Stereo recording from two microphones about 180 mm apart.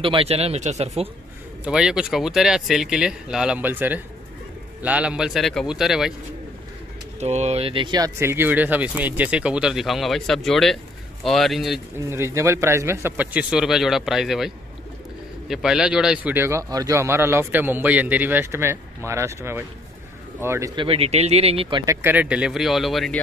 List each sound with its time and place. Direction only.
0.0 s speech: 30° right (ahead or behind)
1.6 s speech: 5° right (ahead or behind)
7.2 s speech: 35° right (ahead or behind); by 11.8 s centre (ahead or behind)
12.1 s speech: 15° right (ahead or behind)
20.7 s speech: 30° right (ahead or behind)
22.0 s speech: 10° right (ahead or behind)